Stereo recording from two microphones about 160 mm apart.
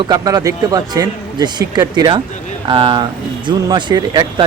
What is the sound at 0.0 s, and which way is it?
Speech, 25° right (ahead or behind).